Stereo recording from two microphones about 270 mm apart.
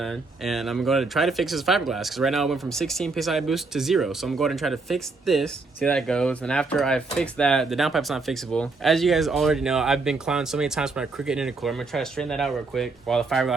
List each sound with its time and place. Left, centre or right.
0.0 s speech: centre